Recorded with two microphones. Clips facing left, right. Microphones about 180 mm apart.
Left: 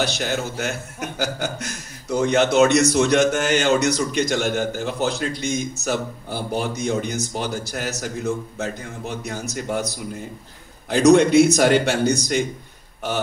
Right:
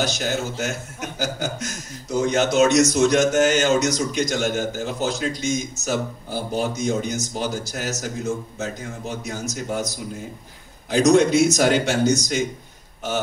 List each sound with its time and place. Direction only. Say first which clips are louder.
0.0 s speech: even; 60° left (ahead or behind)